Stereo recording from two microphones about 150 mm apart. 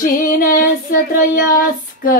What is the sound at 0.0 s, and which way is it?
Female singing, 70° left (ahead or behind).